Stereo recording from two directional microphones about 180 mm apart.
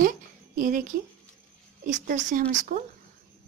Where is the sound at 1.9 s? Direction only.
45° right (ahead or behind).